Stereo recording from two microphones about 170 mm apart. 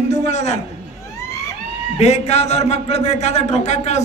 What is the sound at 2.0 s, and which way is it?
A man's voice, 40° left (ahead or behind).